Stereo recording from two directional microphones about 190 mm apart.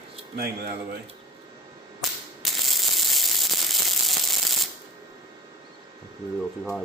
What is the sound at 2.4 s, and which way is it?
Ratchet, centre (ahead or behind).